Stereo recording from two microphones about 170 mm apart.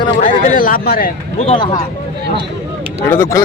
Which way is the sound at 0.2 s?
55° left (ahead or behind).